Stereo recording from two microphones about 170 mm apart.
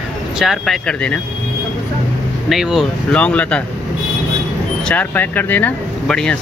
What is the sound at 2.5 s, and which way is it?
Music, centre (ahead or behind).